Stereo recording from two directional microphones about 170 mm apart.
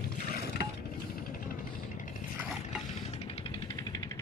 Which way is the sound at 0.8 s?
60° left (ahead or behind).